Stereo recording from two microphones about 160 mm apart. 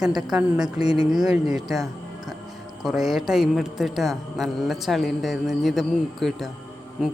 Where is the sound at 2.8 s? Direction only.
Centre (ahead or behind).